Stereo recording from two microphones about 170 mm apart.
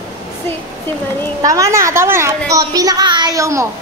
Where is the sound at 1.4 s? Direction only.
20° right (ahead or behind).